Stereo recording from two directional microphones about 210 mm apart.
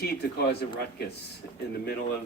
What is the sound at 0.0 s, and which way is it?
Speech, 50° left (ahead or behind).